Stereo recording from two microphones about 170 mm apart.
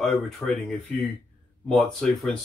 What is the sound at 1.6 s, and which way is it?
Speech, 5° left (ahead or behind).